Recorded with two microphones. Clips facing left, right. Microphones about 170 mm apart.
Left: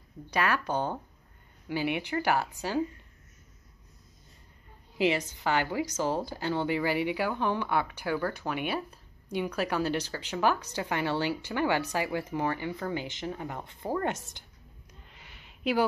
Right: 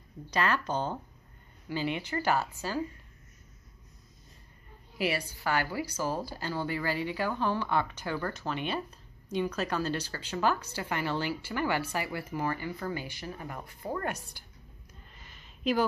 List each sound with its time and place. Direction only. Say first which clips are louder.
0.3 s a woman's voice: left 1 dB; 10° left (ahead or behind)
4.9 s a woman's voice: left 4 dB; 20° left (ahead or behind)
15.1 s a sound: even; 15° left (ahead or behind)